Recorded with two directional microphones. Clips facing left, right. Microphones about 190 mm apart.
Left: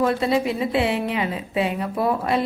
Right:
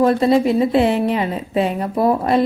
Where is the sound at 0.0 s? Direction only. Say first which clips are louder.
Right 6 dB; 40° right (ahead or behind).